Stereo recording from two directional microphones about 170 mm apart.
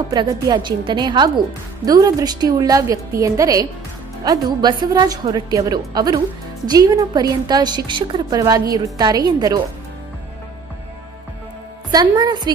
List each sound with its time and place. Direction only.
0.1 s a woman's voice: 25° right (ahead or behind)
11.9 s a woman's voice: 25° right (ahead or behind)